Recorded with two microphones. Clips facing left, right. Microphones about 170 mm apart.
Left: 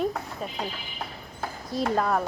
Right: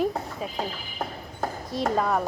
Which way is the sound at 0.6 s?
45° right (ahead or behind).